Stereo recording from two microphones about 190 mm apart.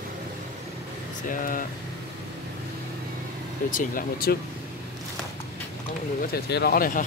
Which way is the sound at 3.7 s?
50° left (ahead or behind).